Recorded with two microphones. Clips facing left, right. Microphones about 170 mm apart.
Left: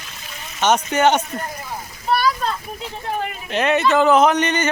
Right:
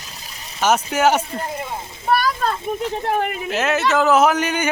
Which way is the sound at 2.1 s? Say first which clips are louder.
Even; 50° right (ahead or behind).